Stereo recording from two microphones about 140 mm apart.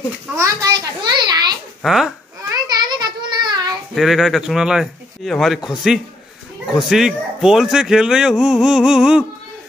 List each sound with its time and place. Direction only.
0.4 s a child's voice: 25° right (ahead or behind)
1.8 s speech: centre (ahead or behind)
2.8 s child singing: 30° right (ahead or behind)
3.9 s speech: centre (ahead or behind)